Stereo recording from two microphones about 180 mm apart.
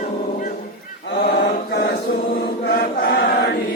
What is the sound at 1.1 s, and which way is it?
Chant, 65° left (ahead or behind).